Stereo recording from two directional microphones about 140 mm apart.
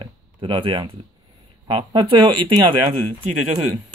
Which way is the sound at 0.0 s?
35° right (ahead or behind).